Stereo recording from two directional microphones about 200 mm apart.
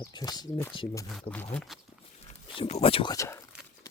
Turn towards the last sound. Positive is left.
turn(degrees=15)  # may be behind; listen again after turning